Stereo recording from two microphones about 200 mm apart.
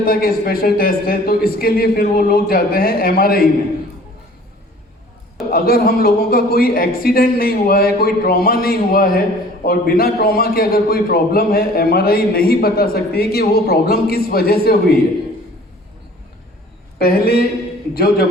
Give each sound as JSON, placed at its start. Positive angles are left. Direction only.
{"t": 0.0, "sound": "a man's voice", "side_deg": 45}
{"t": 5.5, "sound": "a man's voice", "side_deg": 50}
{"t": 17.0, "sound": "a man's voice", "side_deg": 50}